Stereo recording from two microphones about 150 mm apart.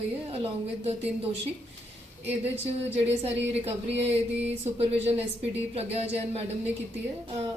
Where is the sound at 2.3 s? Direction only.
45° right (ahead or behind).